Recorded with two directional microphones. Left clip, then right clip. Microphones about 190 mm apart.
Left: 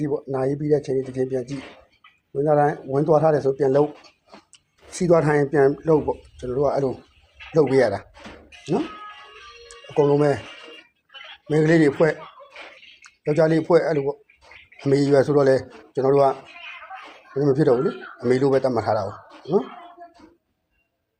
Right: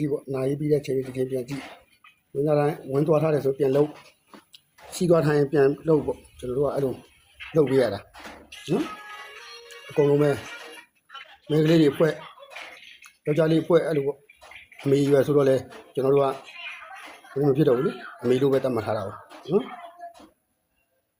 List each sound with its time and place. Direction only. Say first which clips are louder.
0.0 s speech: left 3 dB; 15° right (ahead or behind)
4.5 s a sound: left 1 dB; 20° left (ahead or behind)
5.2 s speech: left 2 dB; 5° right (ahead or behind)
8.4 s music: left 2 dB; 10° right (ahead or behind)
11.4 s speech: left 2 dB; 10° right (ahead or behind)
13.0 s a sound: left 4 dB; 10° right (ahead or behind)
13.6 s speech: left 3 dB; 10° right (ahead or behind)
17.4 s a man's voice: left 2 dB; 10° right (ahead or behind)